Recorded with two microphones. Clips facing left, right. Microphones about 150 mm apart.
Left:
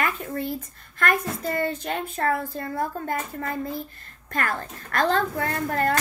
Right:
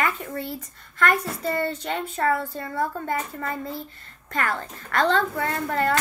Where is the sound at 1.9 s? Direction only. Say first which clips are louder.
Right 1 dB; 45° left (ahead or behind).